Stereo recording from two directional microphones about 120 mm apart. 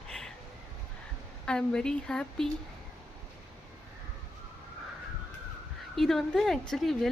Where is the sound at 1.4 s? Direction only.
5° left (ahead or behind).